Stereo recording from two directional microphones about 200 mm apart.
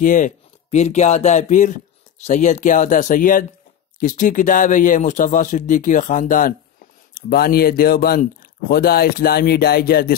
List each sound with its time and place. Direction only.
0.0 s speech: 40° left (ahead or behind)